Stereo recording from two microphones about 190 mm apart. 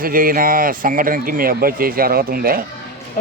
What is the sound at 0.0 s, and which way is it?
Speech, 50° right (ahead or behind).